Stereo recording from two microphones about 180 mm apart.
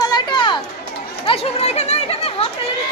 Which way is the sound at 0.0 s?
20° left (ahead or behind).